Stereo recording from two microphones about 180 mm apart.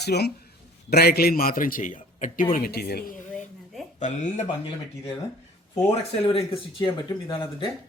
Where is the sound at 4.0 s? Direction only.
40° left (ahead or behind).